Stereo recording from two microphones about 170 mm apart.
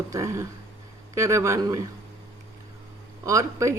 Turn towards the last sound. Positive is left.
turn(degrees=-20)  # may be behind; listen again after turning